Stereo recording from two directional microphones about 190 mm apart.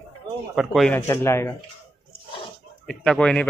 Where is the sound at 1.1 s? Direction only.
15° left (ahead or behind).